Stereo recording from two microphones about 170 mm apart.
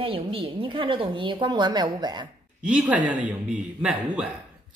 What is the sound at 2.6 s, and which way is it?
A man's voice, 5° right (ahead or behind).